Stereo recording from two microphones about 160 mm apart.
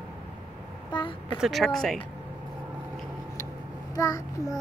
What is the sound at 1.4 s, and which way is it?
Speech, centre (ahead or behind).